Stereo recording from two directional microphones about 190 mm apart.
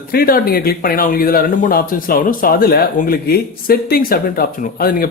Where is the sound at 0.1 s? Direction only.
50° left (ahead or behind).